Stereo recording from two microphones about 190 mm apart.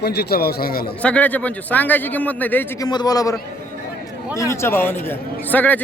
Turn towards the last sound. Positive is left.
turn(degrees=10)  # may be behind; listen again after turning